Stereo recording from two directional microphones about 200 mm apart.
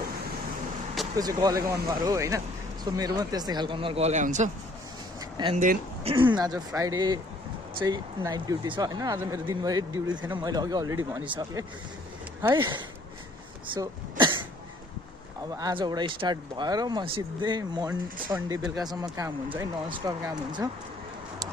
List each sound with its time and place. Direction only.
1.1 s speech: 20° right (ahead or behind); by 4.5 s 35° right (ahead or behind)
5.4 s speech: 20° right (ahead or behind)
13.7 s throat clearing: 25° right (ahead or behind)
15.5 s speech: 20° right (ahead or behind)